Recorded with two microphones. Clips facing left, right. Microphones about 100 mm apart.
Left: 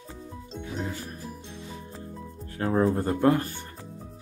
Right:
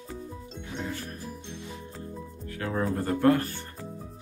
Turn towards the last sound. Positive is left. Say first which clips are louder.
# even
turn(degrees=20)  # may be behind; listen again after turning